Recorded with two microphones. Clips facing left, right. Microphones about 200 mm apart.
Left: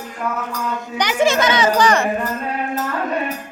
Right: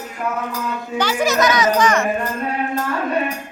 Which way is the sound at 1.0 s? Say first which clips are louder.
Left 1 dB; 20° left (ahead or behind).